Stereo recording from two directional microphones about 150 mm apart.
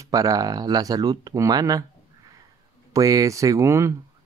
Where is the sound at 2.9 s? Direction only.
20° right (ahead or behind).